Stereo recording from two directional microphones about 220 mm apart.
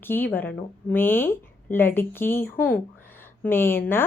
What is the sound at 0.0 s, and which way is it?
A woman's voice, 10° left (ahead or behind).